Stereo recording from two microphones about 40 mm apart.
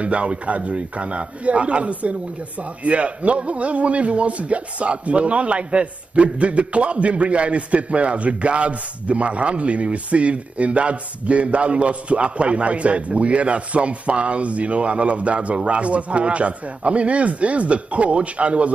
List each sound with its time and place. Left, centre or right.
0.0 s a man's voice: right